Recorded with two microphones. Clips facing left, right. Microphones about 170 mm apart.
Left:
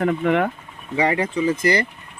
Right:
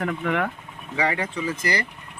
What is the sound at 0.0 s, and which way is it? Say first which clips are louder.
Speech: left 6 dB; 25° left (ahead or behind).